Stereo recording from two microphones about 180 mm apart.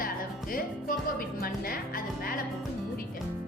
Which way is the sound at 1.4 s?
55° left (ahead or behind).